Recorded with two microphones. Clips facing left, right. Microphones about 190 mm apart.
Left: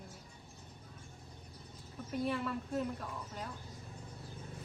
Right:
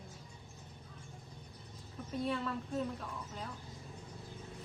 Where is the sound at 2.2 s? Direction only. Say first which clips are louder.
Even; 5° left (ahead or behind).